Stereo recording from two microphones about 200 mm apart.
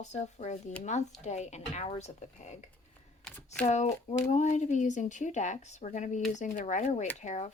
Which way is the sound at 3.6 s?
35° left (ahead or behind).